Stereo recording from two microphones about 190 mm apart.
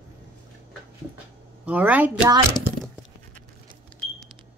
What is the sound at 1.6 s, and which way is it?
Speech, 5° right (ahead or behind).